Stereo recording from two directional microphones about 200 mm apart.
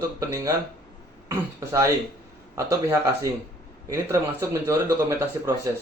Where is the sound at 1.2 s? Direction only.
15° right (ahead or behind).